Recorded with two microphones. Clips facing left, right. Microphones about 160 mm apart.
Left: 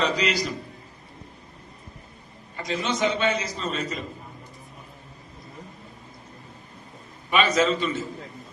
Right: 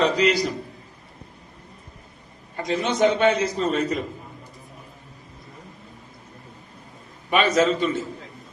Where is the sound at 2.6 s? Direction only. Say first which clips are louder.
Right 5 dB; 55° right (ahead or behind).